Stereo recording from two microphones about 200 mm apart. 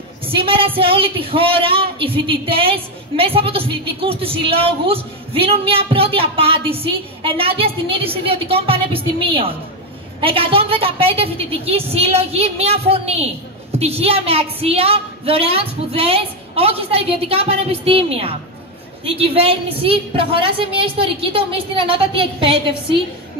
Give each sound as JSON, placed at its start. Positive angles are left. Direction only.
{"t": 0.2, "sound": "a man's voice", "side_deg": -25}